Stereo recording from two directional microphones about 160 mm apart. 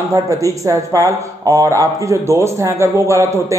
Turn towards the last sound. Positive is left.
turn(degrees=-15)  # may be behind; listen again after turning